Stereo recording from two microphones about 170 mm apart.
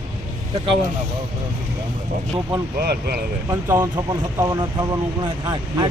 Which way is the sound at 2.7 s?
70° right (ahead or behind).